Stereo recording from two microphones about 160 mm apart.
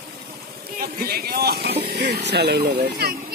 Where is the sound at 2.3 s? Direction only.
90° right.